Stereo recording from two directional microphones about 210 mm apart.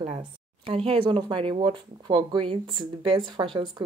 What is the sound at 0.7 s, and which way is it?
A woman's voice, 25° right (ahead or behind).